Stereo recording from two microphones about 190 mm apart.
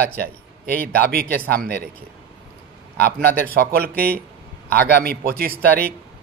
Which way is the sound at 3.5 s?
55° right (ahead or behind).